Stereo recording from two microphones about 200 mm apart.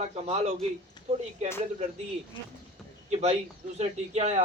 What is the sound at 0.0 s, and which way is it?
Speech, 30° right (ahead or behind).